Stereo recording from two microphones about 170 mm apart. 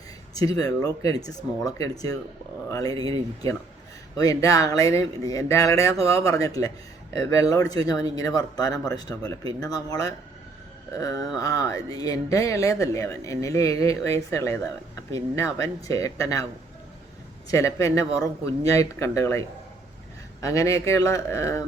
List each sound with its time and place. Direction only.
0.3 s speech: 20° left (ahead or behind)
4.2 s speech: 20° left (ahead or behind)
17.5 s speech: 20° left (ahead or behind)